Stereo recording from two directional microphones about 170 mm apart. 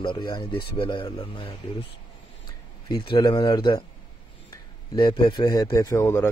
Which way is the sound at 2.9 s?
25° left (ahead or behind).